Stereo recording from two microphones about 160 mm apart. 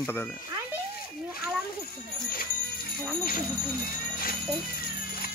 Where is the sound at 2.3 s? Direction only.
65° left (ahead or behind).